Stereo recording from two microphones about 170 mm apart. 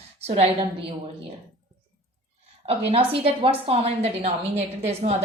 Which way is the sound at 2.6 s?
35° right (ahead or behind).